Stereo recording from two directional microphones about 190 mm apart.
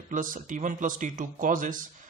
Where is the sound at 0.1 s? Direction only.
40° right (ahead or behind).